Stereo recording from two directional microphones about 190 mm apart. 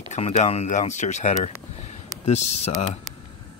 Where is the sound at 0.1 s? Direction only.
35° left (ahead or behind).